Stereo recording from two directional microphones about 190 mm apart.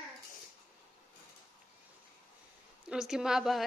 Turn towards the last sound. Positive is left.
turn(degrees=0)  # may be behind; listen again after turning